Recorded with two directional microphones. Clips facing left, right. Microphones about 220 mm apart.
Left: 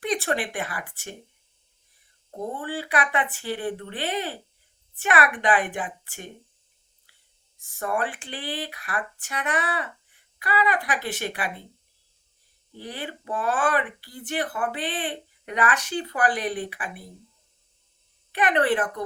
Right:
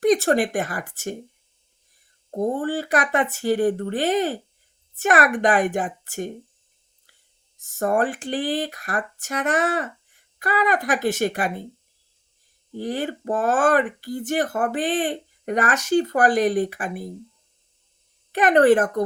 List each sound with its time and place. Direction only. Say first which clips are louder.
0.0 s speech: right 9 dB; 45° right (ahead or behind)
2.3 s speech: right 8 dB; 45° right (ahead or behind)
7.6 s speech: right 6 dB; 45° right (ahead or behind)
12.7 s speech: right 9 dB; 45° right (ahead or behind)
18.3 s speech: right 7 dB; 45° right (ahead or behind)